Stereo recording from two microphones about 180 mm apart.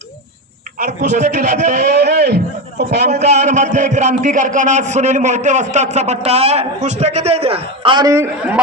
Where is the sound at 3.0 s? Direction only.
40° right (ahead or behind).